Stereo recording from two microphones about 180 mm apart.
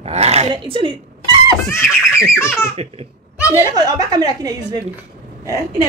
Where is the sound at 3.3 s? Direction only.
10° right (ahead or behind).